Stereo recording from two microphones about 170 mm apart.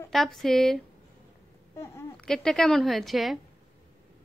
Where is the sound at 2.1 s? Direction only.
5° left (ahead or behind).